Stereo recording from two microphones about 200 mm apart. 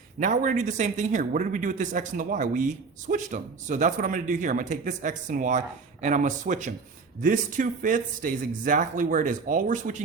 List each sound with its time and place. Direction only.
0.2 s a man's voice: 40° right (ahead or behind)